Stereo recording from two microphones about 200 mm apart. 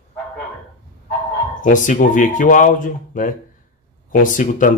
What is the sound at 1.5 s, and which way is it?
Speech, 40° left (ahead or behind).